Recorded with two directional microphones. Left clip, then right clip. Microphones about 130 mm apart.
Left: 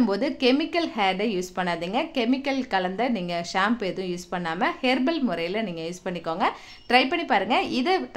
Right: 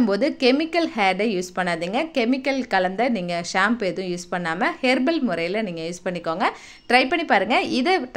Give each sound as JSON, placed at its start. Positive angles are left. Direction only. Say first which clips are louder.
{"t": 0.0, "sound": "a woman's voice", "louder": "right 3 dB", "side_deg": -30}